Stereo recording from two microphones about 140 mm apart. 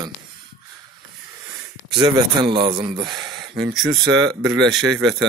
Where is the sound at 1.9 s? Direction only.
35° right (ahead or behind).